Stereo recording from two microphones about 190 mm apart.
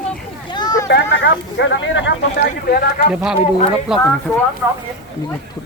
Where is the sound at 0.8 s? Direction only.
70° left (ahead or behind); by 3.0 s 50° left (ahead or behind).